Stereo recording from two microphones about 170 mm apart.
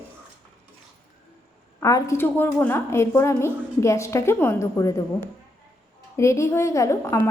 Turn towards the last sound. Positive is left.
turn(degrees=15)  # may be behind; listen again after turning